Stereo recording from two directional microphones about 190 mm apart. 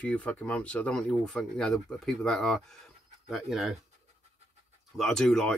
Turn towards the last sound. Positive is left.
turn(degrees=5)  # may be behind; listen again after turning